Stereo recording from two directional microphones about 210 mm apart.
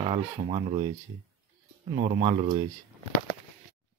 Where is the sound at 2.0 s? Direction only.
30° right (ahead or behind).